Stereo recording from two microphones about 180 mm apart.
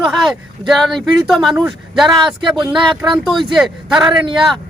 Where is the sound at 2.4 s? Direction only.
25° right (ahead or behind).